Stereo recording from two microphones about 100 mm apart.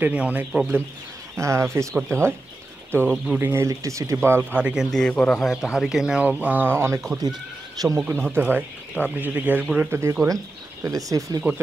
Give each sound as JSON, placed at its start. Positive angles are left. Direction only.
{"t": 0.0, "sound": "a man's voice", "side_deg": -15}
{"t": 1.3, "sound": "speech", "side_deg": -30}
{"t": 4.9, "sound": "a man's voice", "side_deg": 10}
{"t": 6.2, "sound": "speech", "side_deg": -15}
{"t": 7.8, "sound": "speech", "side_deg": -40}
{"t": 8.1, "sound": "speech", "side_deg": -20}
{"t": 10.2, "sound": "speech", "side_deg": -35}